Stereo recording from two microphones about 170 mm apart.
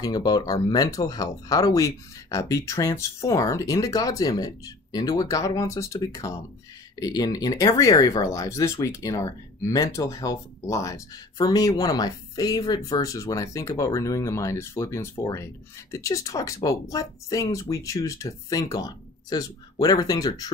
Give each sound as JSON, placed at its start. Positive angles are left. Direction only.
{"t": 0.0, "sound": "speech", "side_deg": 25}